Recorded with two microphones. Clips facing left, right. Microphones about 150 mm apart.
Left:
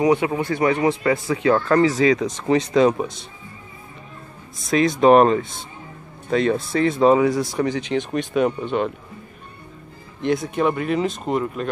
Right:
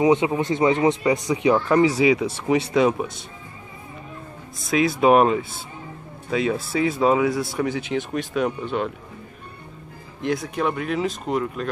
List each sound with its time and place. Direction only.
0.0 s speech: 20° right (ahead or behind); by 3.1 s 5° right (ahead or behind)
4.6 s speech: 5° right (ahead or behind)
10.2 s speech: centre (ahead or behind)